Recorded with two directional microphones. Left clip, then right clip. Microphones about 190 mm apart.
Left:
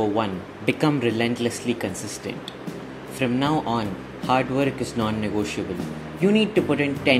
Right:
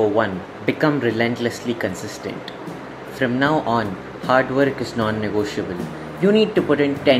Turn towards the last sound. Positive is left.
turn(degrees=15)  # may be behind; listen again after turning